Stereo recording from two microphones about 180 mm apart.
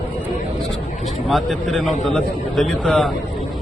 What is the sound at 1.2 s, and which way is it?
A man's voice, centre (ahead or behind).